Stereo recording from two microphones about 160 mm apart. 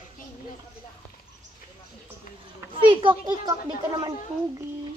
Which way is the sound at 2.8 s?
30° right (ahead or behind).